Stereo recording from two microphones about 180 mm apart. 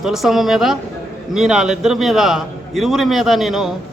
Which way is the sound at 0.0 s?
Centre (ahead or behind).